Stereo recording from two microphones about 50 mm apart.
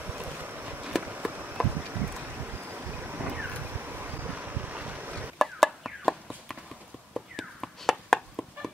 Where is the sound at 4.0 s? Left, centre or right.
Right.